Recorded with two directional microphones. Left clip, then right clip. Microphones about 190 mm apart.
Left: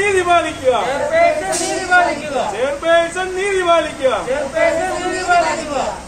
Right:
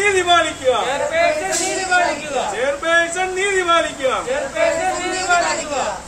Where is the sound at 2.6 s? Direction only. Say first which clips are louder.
Left 2 dB; 15° right (ahead or behind).